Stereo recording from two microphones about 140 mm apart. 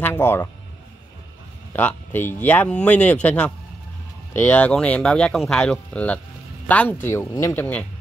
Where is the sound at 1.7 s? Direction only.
15° left (ahead or behind).